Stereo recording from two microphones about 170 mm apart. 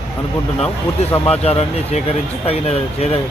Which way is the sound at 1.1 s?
5° left (ahead or behind).